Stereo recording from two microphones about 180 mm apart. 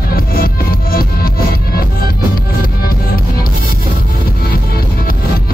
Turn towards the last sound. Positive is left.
turn(degrees=55)  # may be behind; listen again after turning